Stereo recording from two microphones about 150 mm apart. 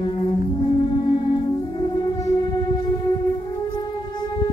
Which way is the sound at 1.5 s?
30° left (ahead or behind).